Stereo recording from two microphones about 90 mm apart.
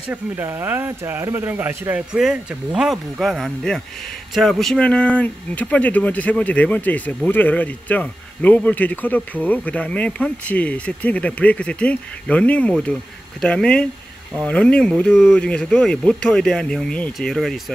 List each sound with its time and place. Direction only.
0.1 s speech: 25° right (ahead or behind)
2.3 s a man's voice: 5° right (ahead or behind)